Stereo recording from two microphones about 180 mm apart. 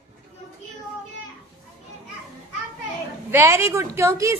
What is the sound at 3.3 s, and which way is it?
A child's voice, 15° right (ahead or behind).